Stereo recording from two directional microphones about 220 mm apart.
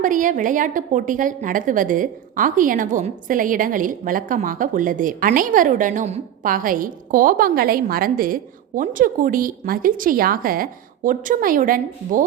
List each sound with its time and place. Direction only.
0.0 s a woman's voice: 35° right (ahead or behind)